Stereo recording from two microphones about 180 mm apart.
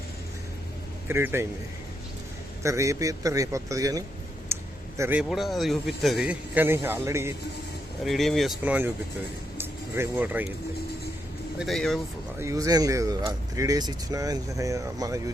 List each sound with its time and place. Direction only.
1.0 s a man's voice: 15° right (ahead or behind)
2.6 s a man's voice: 15° right (ahead or behind)
4.5 s a sound: 15° right (ahead or behind)
4.9 s a man's voice: 10° right (ahead or behind)
5.3 s speech: centre (ahead or behind)
8.0 s speech: centre (ahead or behind)
11.6 s speech: centre (ahead or behind)
12.4 s speech: 15° right (ahead or behind)